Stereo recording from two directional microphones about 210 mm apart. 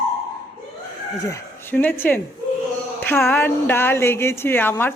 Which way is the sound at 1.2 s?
10° left (ahead or behind).